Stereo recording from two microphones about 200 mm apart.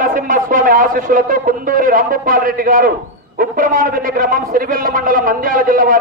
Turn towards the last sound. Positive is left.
turn(degrees=-45)  # may be behind; listen again after turning